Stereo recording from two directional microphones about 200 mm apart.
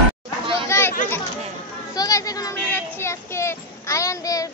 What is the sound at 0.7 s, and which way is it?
Children playing, 10° left (ahead or behind).